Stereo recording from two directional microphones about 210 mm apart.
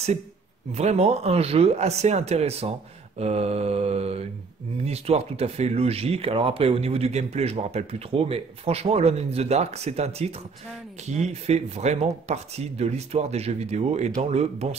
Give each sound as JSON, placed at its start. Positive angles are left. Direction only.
{"t": 0.7, "sound": "speech", "side_deg": -30}